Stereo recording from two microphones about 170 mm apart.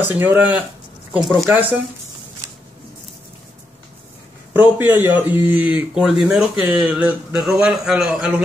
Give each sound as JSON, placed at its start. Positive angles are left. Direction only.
{"t": 0.0, "sound": "speech", "side_deg": -10}
{"t": 4.6, "sound": "speech", "side_deg": -10}